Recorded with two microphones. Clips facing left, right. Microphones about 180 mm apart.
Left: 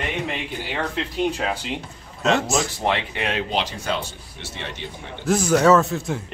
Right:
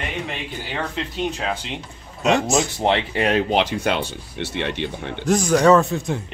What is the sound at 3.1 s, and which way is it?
Speech, 45° right (ahead or behind).